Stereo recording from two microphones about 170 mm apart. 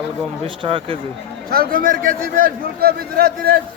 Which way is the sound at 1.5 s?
60° right (ahead or behind).